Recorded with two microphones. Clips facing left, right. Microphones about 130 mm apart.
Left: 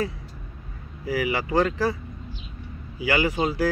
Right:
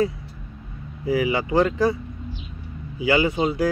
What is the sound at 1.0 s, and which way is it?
Speech, 25° right (ahead or behind).